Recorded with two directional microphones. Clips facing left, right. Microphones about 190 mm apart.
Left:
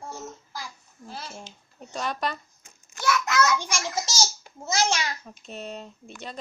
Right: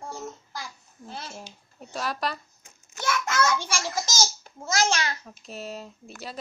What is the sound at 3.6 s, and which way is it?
A child's voice, 15° left (ahead or behind).